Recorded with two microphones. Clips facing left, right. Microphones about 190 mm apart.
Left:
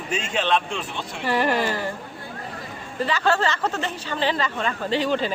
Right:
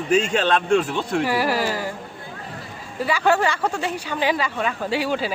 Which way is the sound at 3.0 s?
10° right (ahead or behind).